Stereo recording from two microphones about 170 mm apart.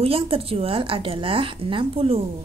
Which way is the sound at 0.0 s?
35° right (ahead or behind).